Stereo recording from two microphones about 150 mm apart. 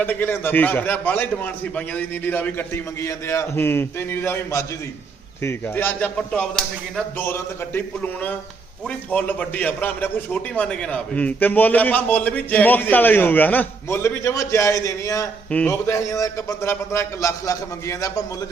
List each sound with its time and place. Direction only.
0.0 s a man's voice: 10° left (ahead or behind)
7.2 s a man's voice: 15° left (ahead or behind)
15.4 s a man's voice: 10° left (ahead or behind)
15.7 s a man's voice: 20° left (ahead or behind)